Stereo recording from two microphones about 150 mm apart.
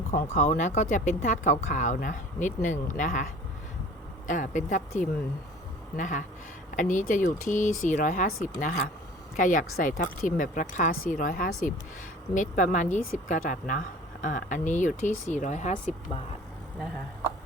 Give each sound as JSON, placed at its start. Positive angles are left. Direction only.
{"t": 0.1, "sound": "speech", "side_deg": 65}
{"t": 4.3, "sound": "speech", "side_deg": 60}
{"t": 12.3, "sound": "speech", "side_deg": 55}